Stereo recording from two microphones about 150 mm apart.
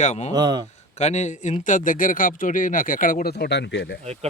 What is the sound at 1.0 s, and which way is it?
A man's voice, 50° left (ahead or behind).